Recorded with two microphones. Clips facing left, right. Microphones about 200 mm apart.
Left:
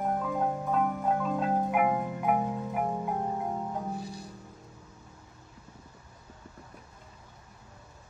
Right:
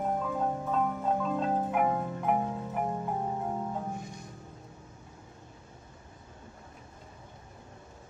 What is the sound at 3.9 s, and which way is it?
Music, 35° left (ahead or behind).